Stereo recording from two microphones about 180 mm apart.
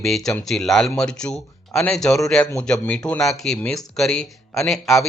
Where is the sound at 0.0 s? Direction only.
Centre (ahead or behind).